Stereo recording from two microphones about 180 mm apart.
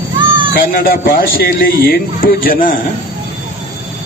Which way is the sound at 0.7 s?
55° left (ahead or behind).